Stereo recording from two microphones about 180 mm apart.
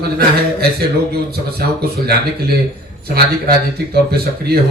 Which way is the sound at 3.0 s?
60° right (ahead or behind).